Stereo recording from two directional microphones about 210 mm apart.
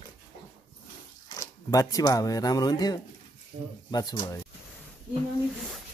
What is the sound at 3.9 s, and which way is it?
Speech, 20° left (ahead or behind).